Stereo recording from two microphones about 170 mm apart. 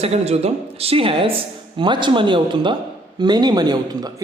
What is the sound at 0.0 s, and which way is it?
A woman's voice, 35° right (ahead or behind).